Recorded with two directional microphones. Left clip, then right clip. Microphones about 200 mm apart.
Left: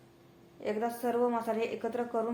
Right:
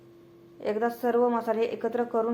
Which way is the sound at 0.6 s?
25° right (ahead or behind).